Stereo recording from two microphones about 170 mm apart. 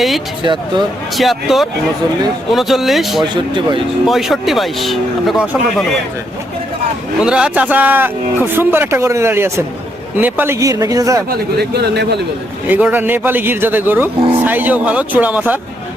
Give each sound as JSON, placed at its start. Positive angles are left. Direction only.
{"t": 0.4, "sound": "a man's voice", "side_deg": -25}
{"t": 1.1, "sound": "speech", "side_deg": 0}
{"t": 3.2, "sound": "a man's voice", "side_deg": -25}
{"t": 4.0, "sound": "speech", "side_deg": 0}
{"t": 7.2, "sound": "a man's voice", "side_deg": -5}
{"t": 11.3, "sound": "speech", "side_deg": -70}
{"t": 12.6, "sound": "speech", "side_deg": -10}